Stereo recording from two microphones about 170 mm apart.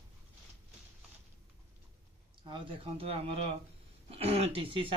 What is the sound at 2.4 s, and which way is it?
Speech, 30° right (ahead or behind).